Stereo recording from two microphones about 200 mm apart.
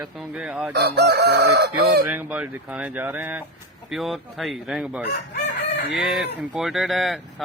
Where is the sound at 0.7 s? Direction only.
55° right (ahead or behind).